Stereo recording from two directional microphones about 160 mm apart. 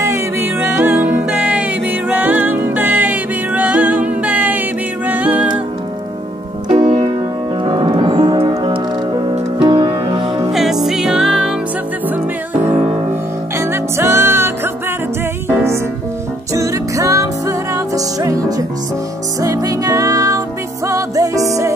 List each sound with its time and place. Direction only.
0.0 s music: 15° right (ahead or behind)
6.9 s music: 45° right (ahead or behind)
7.6 s music: 30° right (ahead or behind)
10.5 s music: centre (ahead or behind)
13.6 s music: 15° right (ahead or behind)